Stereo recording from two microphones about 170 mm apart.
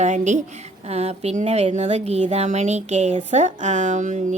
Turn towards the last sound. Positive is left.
turn(degrees=-45)  # may be behind; listen again after turning